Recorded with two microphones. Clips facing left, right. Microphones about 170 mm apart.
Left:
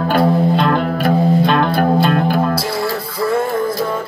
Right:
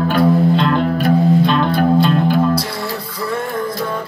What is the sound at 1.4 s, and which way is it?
Music, 60° left (ahead or behind).